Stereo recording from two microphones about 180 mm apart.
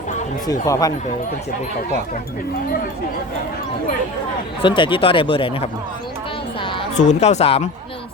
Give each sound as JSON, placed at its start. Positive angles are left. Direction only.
{"t": 0.4, "sound": "speech", "side_deg": 20}
{"t": 4.6, "sound": "speech", "side_deg": 25}
{"t": 6.6, "sound": "a sound", "side_deg": 30}
{"t": 7.0, "sound": "speech", "side_deg": 40}